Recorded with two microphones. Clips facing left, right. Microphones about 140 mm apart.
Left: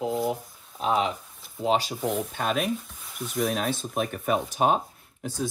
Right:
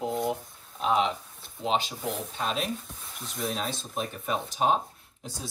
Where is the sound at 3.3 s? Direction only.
65° left (ahead or behind).